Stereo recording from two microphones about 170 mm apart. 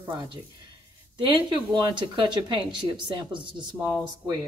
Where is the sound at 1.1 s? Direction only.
25° right (ahead or behind).